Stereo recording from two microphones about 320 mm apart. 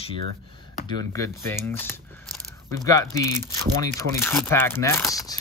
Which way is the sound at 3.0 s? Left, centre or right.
Centre.